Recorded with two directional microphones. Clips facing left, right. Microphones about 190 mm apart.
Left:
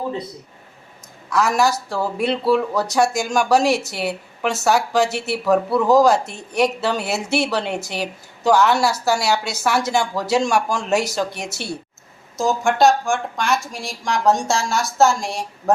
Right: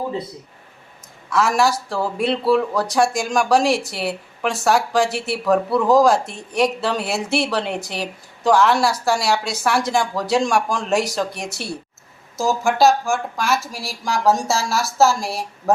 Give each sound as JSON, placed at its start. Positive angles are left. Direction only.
{"t": 1.3, "sound": "a woman's voice", "side_deg": 0}